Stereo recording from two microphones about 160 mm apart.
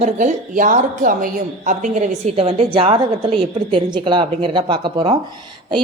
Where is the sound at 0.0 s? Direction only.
50° right (ahead or behind).